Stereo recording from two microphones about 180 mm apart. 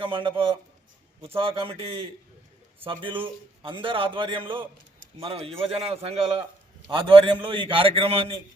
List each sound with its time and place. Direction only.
0.0 s a man's voice: 30° right (ahead or behind)